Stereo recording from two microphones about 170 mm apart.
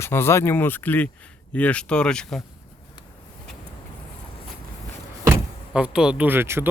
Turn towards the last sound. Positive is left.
turn(degrees=-15)  # may be behind; listen again after turning